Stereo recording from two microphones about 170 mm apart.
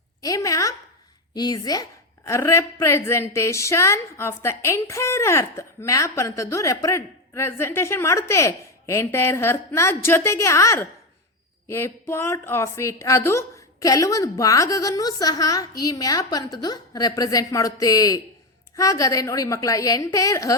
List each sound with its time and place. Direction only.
0.2 s a woman's voice: 20° left (ahead or behind)